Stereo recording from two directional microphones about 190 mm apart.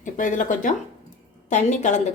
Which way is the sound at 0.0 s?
45° left (ahead or behind).